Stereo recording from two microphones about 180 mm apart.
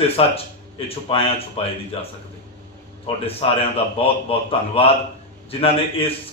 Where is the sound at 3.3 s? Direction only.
30° left (ahead or behind).